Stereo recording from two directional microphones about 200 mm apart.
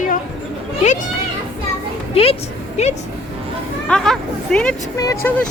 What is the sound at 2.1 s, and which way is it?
Speech, 30° left (ahead or behind).